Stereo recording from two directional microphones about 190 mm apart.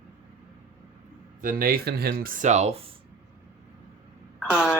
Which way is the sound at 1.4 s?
45° right (ahead or behind).